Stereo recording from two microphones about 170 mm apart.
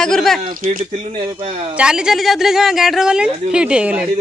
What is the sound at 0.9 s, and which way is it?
Speech, 35° right (ahead or behind).